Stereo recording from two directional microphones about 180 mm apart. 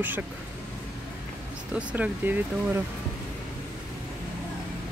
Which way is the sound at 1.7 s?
10° right (ahead or behind).